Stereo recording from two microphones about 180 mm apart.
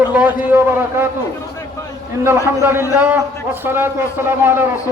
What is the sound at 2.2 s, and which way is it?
A man's voice, 10° right (ahead or behind).